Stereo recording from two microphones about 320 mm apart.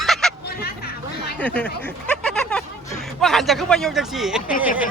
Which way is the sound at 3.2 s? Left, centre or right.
Centre.